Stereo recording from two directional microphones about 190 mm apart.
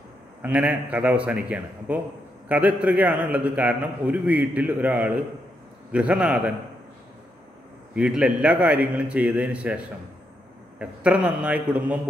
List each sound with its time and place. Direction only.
0.4 s a man's voice: 10° right (ahead or behind)
7.9 s a man's voice: 5° right (ahead or behind)